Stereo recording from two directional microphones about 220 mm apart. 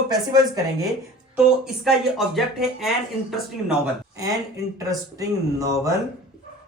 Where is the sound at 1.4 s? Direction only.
Centre (ahead or behind).